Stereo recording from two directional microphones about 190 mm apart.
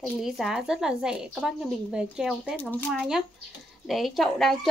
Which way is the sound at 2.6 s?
10° left (ahead or behind).